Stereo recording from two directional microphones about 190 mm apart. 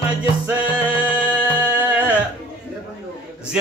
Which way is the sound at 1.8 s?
10° right (ahead or behind).